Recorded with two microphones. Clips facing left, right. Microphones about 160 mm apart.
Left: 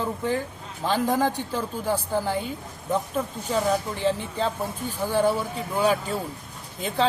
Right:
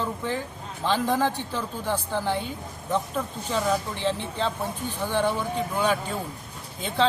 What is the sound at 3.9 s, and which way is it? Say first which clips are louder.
A man's voice: left 2 dB; 45° left (ahead or behind).